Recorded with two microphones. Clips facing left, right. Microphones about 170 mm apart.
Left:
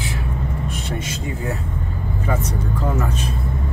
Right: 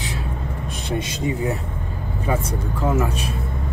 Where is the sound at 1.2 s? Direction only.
15° right (ahead or behind).